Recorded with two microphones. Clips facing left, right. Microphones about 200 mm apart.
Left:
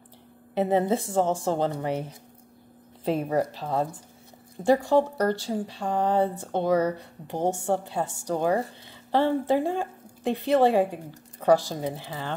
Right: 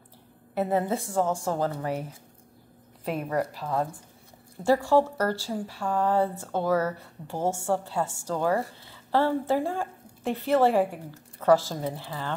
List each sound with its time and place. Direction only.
0.6 s a woman's voice: 20° left (ahead or behind)
3.1 s a woman's voice: 25° left (ahead or behind)
4.8 s a woman's voice: 20° left (ahead or behind)